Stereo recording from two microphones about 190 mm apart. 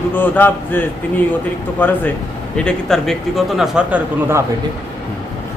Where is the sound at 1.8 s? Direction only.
10° left (ahead or behind); by 4.4 s 10° right (ahead or behind).